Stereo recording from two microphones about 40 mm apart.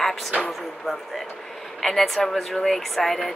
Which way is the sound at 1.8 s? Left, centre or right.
Centre.